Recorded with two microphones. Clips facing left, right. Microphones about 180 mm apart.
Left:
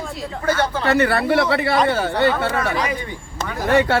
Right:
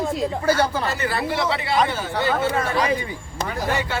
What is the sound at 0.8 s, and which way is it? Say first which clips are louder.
Speech: left 7 dB; 65° left (ahead or behind).